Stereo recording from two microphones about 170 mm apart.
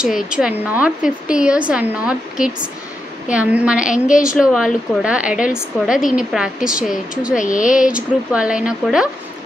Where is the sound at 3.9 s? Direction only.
50° left (ahead or behind).